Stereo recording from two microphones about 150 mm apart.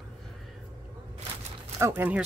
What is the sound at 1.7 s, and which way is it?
Speech, 20° right (ahead or behind).